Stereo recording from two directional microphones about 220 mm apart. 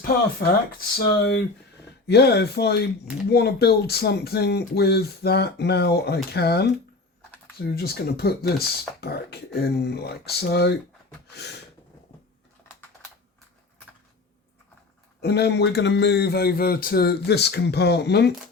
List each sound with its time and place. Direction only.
0.9 s speech: 45° left (ahead or behind)
11.3 s a sound: 50° left (ahead or behind)
15.2 s speech: 50° left (ahead or behind)